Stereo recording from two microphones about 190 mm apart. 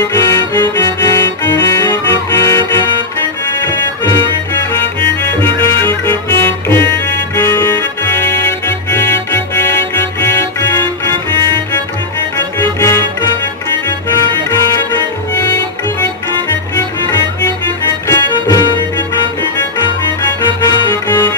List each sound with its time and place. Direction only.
0.1 s music: 20° left (ahead or behind)
12.4 s music: 10° left (ahead or behind)
14.5 s music: 15° left (ahead or behind)
18.0 s music: 15° left (ahead or behind)
20.4 s accordion: 20° left (ahead or behind)